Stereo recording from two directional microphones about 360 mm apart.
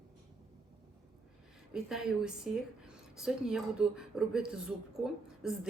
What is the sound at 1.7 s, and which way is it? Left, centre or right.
A woman's voice, centre.